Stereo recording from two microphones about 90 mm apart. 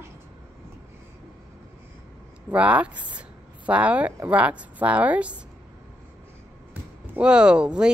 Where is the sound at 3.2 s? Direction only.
15° right (ahead or behind).